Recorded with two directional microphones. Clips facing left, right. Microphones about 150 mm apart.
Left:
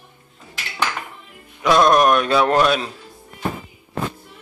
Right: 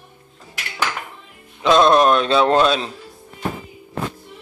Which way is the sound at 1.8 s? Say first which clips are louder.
Even; 25° right (ahead or behind).